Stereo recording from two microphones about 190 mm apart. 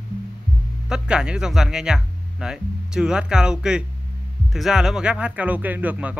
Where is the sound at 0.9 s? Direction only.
5° right (ahead or behind).